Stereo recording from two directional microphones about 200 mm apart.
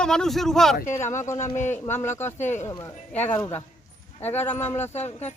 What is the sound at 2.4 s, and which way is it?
Speech, 35° left (ahead or behind).